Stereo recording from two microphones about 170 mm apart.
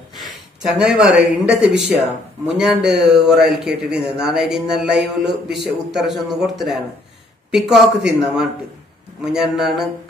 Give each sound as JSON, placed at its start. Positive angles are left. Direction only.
{"t": 0.2, "sound": "a man's voice", "side_deg": 0}